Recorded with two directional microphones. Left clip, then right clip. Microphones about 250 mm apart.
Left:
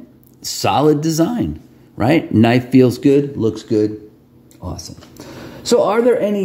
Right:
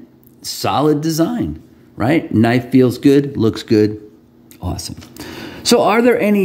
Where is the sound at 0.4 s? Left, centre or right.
Centre.